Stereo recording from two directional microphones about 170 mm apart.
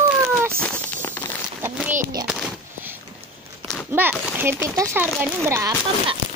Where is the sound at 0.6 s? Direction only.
5° left (ahead or behind).